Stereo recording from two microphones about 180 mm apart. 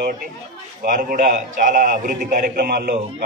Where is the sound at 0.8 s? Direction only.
50° right (ahead or behind).